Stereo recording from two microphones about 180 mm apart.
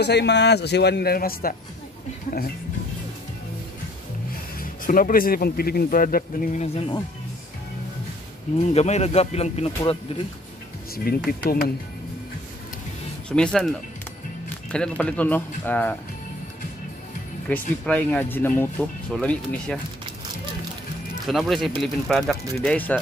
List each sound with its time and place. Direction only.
0.0 s speech: 70° left (ahead or behind)
4.6 s speech: 50° left (ahead or behind)
8.7 s speech: 35° left (ahead or behind)
11.1 s speech: 55° left (ahead or behind)
13.3 s speech: 5° left (ahead or behind)
17.5 s speech: 5° left (ahead or behind)
21.3 s speech: centre (ahead or behind)